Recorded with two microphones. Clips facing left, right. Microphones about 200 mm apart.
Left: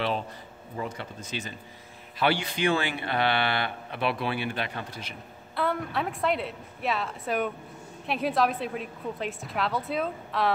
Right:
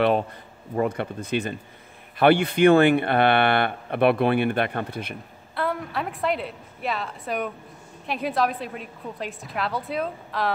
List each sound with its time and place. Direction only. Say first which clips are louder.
0.7 s speech: right 10 dB; 60° right (ahead or behind)
5.5 s a woman's voice: right 1 dB; centre (ahead or behind)